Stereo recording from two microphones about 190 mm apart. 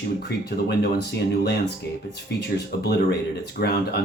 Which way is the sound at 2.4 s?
60° left (ahead or behind).